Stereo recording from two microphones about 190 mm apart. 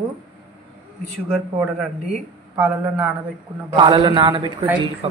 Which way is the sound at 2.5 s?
10° right (ahead or behind).